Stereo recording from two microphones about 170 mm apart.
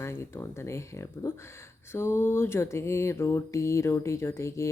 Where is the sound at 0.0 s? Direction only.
15° left (ahead or behind).